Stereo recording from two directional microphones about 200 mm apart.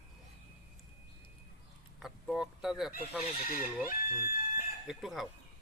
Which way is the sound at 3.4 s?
45° left (ahead or behind).